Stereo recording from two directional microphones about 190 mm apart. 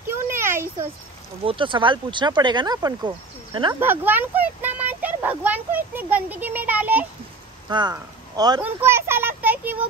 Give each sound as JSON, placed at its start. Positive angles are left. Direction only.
{"t": 0.1, "sound": "a sound", "side_deg": -15}
{"t": 1.4, "sound": "speech", "side_deg": -25}
{"t": 3.8, "sound": "a child's voice", "side_deg": -10}
{"t": 7.7, "sound": "a child's voice", "side_deg": -20}